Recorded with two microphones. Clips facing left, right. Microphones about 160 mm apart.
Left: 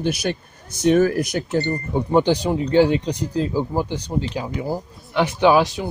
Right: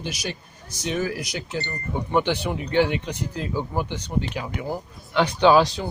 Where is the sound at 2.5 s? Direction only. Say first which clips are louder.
Left 6 dB; 35° left (ahead or behind).